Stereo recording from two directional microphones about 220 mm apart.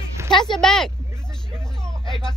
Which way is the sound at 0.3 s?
20° left (ahead or behind).